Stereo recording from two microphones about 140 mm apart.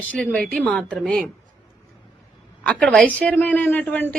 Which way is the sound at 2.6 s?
5° left (ahead or behind).